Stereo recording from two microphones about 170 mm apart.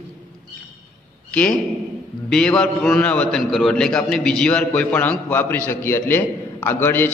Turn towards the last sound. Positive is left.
turn(degrees=10)  # may be behind; listen again after turning